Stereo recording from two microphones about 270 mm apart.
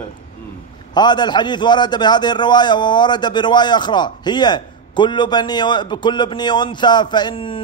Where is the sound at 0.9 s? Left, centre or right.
Centre.